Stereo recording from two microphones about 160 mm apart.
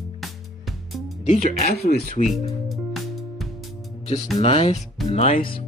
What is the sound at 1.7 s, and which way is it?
Speech, 75° left (ahead or behind).